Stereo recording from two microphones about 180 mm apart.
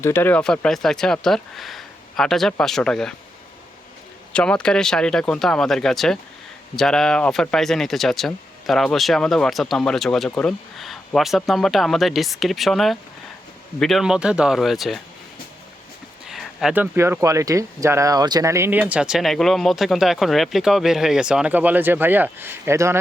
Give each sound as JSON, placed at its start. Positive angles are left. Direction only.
{"t": 0.0, "sound": "speech", "side_deg": 10}
{"t": 4.3, "sound": "speech", "side_deg": 5}
{"t": 16.2, "sound": "speech", "side_deg": 0}